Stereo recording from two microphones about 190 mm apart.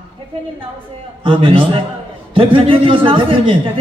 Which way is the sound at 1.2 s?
30° right (ahead or behind).